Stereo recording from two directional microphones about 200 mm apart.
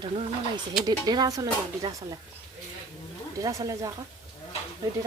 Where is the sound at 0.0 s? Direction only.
25° right (ahead or behind).